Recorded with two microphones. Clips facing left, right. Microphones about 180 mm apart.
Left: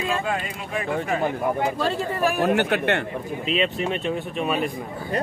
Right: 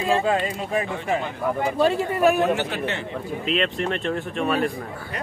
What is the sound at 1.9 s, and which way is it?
Speech, 15° right (ahead or behind).